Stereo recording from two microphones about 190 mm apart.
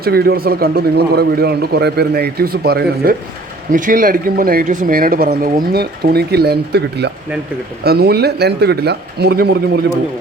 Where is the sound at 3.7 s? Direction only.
45° right (ahead or behind).